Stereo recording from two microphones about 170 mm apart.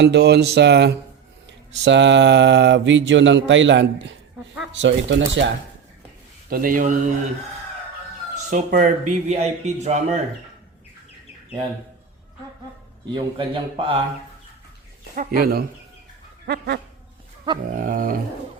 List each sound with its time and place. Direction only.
0.0 s speech: 85° right
1.5 s a sound: 90° right
6.5 s speech: 55° right (ahead or behind)
8.4 s speech: 50° right (ahead or behind)
13.1 s a man's voice: 30° right (ahead or behind)
15.1 s speech: 55° right (ahead or behind)
16.5 s dog: 75° right (ahead or behind)
17.7 s speech: 55° right (ahead or behind)